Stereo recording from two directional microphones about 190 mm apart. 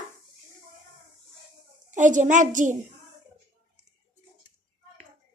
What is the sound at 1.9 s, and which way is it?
Speech, 40° right (ahead or behind).